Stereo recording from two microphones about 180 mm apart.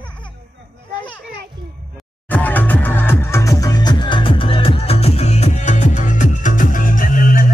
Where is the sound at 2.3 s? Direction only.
10° left (ahead or behind).